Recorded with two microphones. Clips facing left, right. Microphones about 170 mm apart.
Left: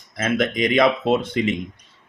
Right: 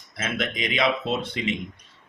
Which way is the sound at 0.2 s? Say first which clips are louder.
Left 8 dB; 45° left (ahead or behind).